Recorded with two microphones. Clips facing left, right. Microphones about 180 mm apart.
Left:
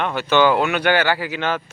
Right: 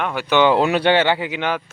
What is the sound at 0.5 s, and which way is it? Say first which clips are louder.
Speech: right 2 dB; 30° right (ahead or behind).